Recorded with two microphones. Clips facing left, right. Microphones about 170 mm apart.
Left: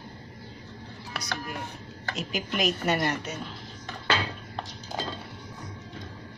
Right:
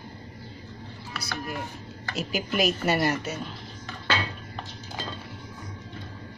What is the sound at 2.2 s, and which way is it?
A woman's voice, 5° right (ahead or behind).